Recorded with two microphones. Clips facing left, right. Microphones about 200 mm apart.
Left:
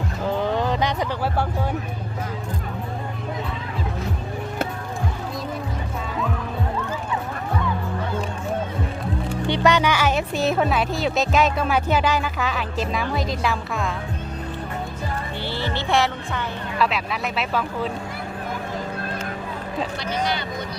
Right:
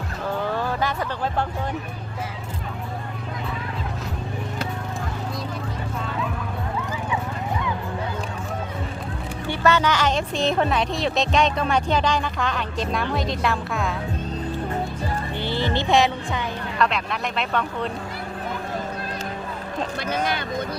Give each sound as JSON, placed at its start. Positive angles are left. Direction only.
{"t": 0.4, "sound": "a sound", "side_deg": 20}
{"t": 9.5, "sound": "speech", "side_deg": 15}
{"t": 15.4, "sound": "music", "side_deg": -15}
{"t": 16.7, "sound": "speech", "side_deg": 5}
{"t": 20.0, "sound": "speech", "side_deg": -50}